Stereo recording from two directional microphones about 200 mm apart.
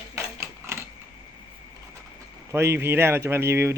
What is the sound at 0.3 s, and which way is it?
Mechanisms, 15° right (ahead or behind).